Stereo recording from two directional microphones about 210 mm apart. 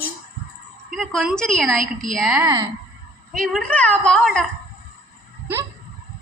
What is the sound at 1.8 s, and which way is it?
Speech, 40° right (ahead or behind).